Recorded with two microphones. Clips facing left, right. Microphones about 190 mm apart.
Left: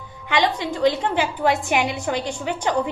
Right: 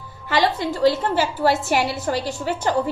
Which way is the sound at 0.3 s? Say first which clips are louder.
Right 1 dB; 15° left (ahead or behind).